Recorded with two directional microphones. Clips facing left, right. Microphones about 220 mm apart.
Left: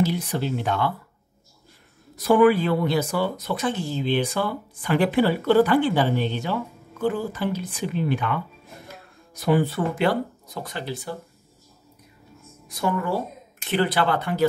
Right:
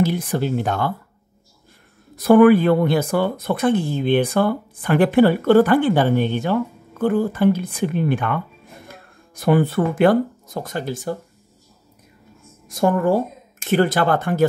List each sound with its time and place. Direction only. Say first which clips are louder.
0.0 s speech: right 4 dB; 50° right (ahead or behind)
2.1 s speech: right 6 dB; 55° right (ahead or behind)
12.6 s speech: right 8 dB; 45° right (ahead or behind)